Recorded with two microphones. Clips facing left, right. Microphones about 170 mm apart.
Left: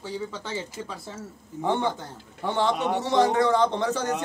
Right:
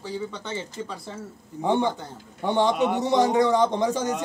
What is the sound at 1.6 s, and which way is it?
A man's voice, 15° right (ahead or behind).